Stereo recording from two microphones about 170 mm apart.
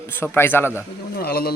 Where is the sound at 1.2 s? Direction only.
65° left (ahead or behind).